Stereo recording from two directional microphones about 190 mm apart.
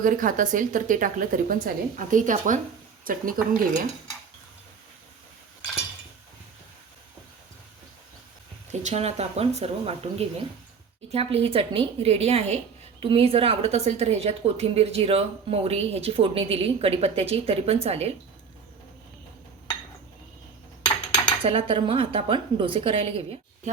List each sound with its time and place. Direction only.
0.0 s a woman's voice: 45° right (ahead or behind)
8.8 s a woman's voice: 35° right (ahead or behind)
20.8 s cutlery: 25° left (ahead or behind)
21.4 s a woman's voice: 30° right (ahead or behind)